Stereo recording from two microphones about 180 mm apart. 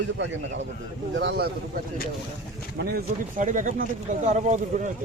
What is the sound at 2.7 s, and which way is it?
Speech, 60° right (ahead or behind).